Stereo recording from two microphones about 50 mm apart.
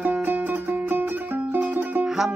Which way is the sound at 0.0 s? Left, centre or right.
Right.